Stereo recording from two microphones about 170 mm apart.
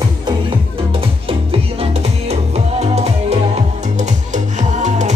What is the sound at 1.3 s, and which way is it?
Music, 35° right (ahead or behind).